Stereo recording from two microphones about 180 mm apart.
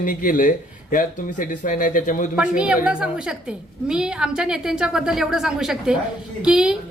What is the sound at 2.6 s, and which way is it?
A woman's voice, 5° right (ahead or behind).